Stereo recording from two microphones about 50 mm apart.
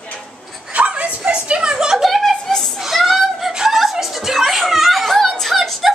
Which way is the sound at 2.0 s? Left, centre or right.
Centre.